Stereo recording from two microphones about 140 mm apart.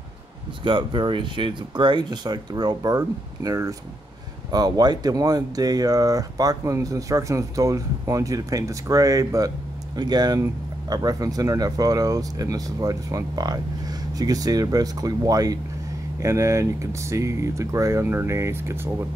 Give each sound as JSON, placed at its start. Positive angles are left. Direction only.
{"t": 0.7, "sound": "speech", "side_deg": -35}